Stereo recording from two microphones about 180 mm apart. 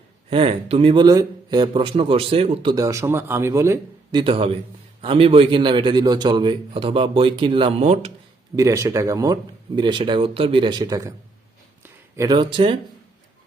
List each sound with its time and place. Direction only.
0.3 s a man's voice: 30° right (ahead or behind); by 3.8 s 15° right (ahead or behind)
4.1 s a man's voice: 30° right (ahead or behind)
8.5 s a man's voice: 20° right (ahead or behind)
11.8 s a sound: 15° right (ahead or behind)